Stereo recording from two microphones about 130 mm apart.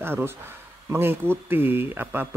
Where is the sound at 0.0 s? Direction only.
20° right (ahead or behind).